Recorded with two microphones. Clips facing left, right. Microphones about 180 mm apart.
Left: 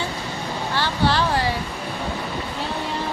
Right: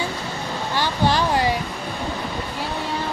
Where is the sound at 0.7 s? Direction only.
15° right (ahead or behind).